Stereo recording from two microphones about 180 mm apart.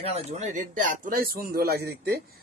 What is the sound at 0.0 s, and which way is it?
A man's voice, 35° right (ahead or behind).